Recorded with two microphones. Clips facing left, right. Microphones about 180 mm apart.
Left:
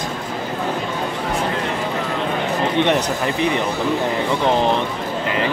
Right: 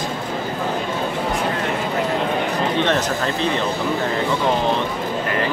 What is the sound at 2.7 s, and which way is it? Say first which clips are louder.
Speech: left 3 dB; 15° left (ahead or behind).